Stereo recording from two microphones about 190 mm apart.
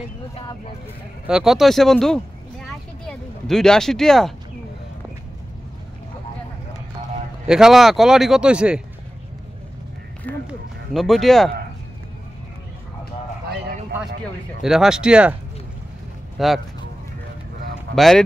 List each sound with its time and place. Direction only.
1.2 s speech: 5° right (ahead or behind)
7.4 s speech: 5° right (ahead or behind)
10.4 s speech: centre (ahead or behind)
13.5 s clip-clop: 60° right (ahead or behind)
14.2 s speech: centre (ahead or behind)
16.3 s speech: centre (ahead or behind)
17.9 s speech: centre (ahead or behind)